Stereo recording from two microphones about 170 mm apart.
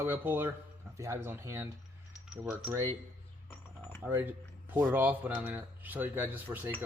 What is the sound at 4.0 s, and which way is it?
Speech, 10° right (ahead or behind).